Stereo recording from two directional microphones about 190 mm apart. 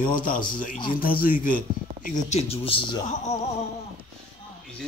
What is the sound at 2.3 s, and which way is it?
A woman's voice, 30° left (ahead or behind).